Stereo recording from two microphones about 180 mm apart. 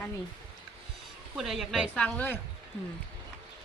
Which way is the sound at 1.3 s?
Centre (ahead or behind).